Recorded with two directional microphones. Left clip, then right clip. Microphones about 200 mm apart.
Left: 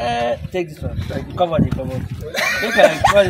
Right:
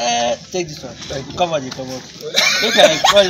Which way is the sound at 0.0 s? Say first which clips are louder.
Right 2 dB; 15° left (ahead or behind).